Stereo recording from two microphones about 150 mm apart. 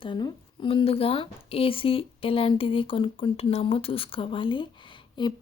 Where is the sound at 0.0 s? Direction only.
30° left (ahead or behind).